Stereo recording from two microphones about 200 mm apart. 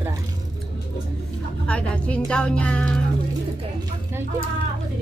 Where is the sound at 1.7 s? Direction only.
5° left (ahead or behind).